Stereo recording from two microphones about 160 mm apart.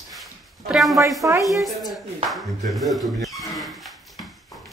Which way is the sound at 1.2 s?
20° right (ahead or behind).